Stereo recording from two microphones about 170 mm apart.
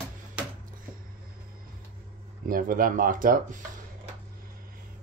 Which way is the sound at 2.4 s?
55° right (ahead or behind).